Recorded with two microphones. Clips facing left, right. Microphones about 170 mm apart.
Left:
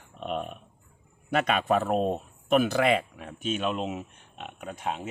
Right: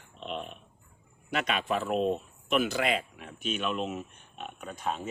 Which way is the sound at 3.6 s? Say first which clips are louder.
Left 2 dB; 25° left (ahead or behind).